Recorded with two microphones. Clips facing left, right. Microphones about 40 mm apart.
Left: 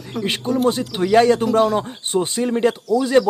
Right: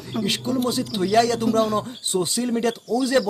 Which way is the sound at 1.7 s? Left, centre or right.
Left.